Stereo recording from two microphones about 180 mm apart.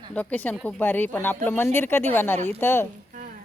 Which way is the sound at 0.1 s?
10° left (ahead or behind).